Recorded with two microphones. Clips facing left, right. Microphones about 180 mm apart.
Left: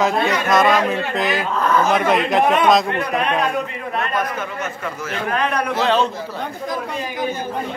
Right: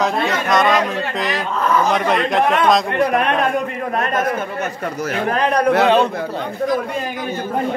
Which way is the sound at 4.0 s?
45° right (ahead or behind).